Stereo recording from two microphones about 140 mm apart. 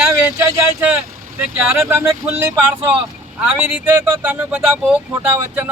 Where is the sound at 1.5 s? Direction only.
15° right (ahead or behind).